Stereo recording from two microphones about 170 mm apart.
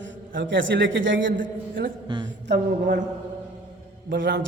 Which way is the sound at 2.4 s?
70° right (ahead or behind).